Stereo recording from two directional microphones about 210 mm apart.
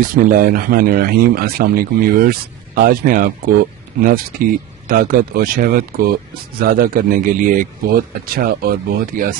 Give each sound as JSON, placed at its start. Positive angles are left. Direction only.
{"t": 0.1, "sound": "speech", "side_deg": -40}